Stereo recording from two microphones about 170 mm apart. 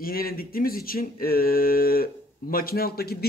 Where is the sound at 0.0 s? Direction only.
60° left (ahead or behind).